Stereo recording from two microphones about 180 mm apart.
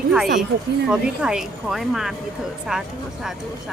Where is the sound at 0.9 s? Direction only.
5° right (ahead or behind).